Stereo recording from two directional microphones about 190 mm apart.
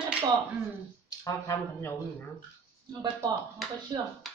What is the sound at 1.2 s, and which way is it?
Speech, 15° left (ahead or behind).